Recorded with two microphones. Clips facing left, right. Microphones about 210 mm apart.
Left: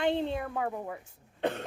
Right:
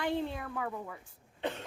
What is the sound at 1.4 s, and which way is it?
Cough, 60° left (ahead or behind).